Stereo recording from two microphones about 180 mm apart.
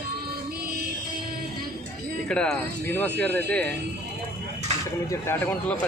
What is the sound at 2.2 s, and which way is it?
Speech, 5° left (ahead or behind).